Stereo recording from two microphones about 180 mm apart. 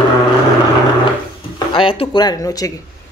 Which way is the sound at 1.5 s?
30° left (ahead or behind).